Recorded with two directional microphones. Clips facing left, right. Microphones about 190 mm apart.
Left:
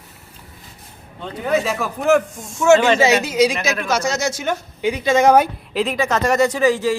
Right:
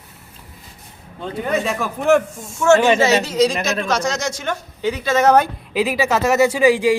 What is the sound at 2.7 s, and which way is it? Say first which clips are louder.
Speech: even; 15° right (ahead or behind).